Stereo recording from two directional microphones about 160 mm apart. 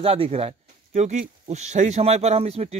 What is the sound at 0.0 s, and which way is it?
Speech, 35° right (ahead or behind).